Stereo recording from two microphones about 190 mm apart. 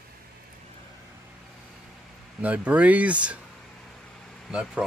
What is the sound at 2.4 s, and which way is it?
Speech, 5° right (ahead or behind).